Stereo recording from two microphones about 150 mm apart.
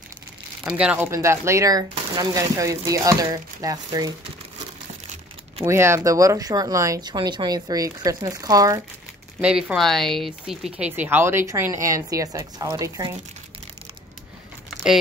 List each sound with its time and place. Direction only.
0.7 s speech: 5° right (ahead or behind); by 4.1 s 25° right (ahead or behind)
5.0 s crumpling: 50° right (ahead or behind)
5.7 s speech: 20° right (ahead or behind)
9.4 s speech: 5° right (ahead or behind)
10.9 s speech: 15° right (ahead or behind)